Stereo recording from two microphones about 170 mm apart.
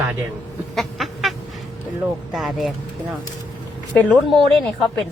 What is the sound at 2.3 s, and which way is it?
A woman's voice, centre (ahead or behind).